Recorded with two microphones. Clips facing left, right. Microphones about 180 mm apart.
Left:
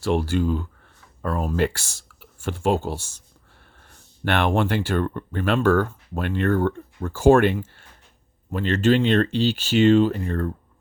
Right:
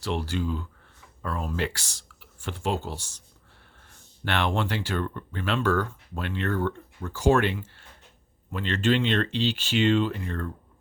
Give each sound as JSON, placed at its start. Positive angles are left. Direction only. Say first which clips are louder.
{"t": 0.0, "sound": "speech", "louder": "left 7 dB", "side_deg": 50}
{"t": 4.3, "sound": "speech", "louder": "left 6 dB", "side_deg": 50}